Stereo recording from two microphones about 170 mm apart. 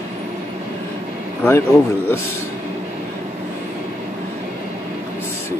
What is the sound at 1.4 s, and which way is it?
Speech, 15° left (ahead or behind).